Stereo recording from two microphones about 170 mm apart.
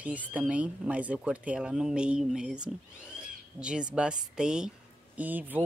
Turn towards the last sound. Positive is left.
turn(degrees=-10)  # may be behind; listen again after turning